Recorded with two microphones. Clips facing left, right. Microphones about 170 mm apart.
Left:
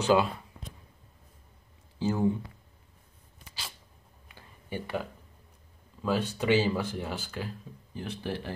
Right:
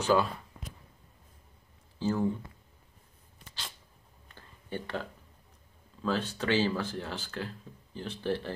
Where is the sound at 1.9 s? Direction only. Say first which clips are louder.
Left 2 dB; 15° left (ahead or behind).